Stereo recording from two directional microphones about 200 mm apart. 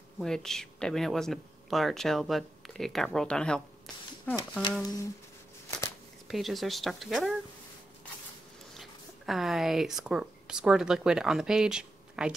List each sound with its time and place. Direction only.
0.2 s speech: centre (ahead or behind)
4.4 s speech: 20° left (ahead or behind)
6.2 s speech: centre (ahead or behind)
8.7 s speech: centre (ahead or behind)